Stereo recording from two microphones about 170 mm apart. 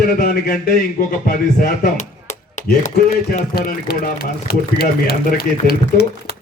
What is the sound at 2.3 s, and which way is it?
Speech, 45° left (ahead or behind).